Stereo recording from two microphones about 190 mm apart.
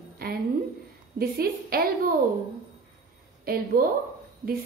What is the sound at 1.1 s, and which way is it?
Speech, 50° right (ahead or behind).